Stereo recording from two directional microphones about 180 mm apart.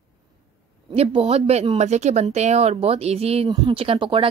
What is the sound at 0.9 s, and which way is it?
Speech, 30° right (ahead or behind).